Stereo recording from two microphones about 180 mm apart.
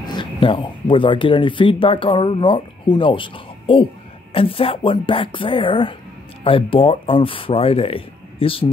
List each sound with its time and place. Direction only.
0.0 s speech: 25° left (ahead or behind)